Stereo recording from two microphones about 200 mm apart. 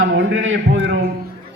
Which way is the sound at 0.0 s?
70° right (ahead or behind).